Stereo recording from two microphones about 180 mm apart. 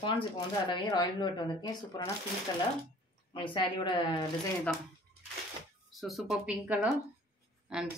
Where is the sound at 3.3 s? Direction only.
25° left (ahead or behind).